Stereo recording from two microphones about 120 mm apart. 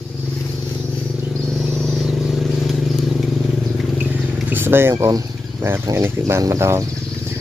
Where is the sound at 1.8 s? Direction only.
Centre (ahead or behind).